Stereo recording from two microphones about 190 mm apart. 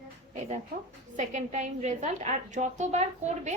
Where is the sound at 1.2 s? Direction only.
35° right (ahead or behind).